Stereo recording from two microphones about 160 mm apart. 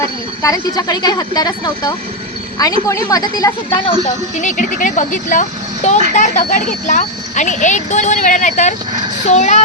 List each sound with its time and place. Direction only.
0.4 s a woman's voice: 20° left (ahead or behind)
3.8 s speech: 50° left (ahead or behind)